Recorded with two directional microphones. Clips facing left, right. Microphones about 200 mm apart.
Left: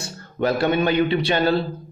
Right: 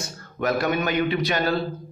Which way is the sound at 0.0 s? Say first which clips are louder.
Left 3 dB; 30° left (ahead or behind).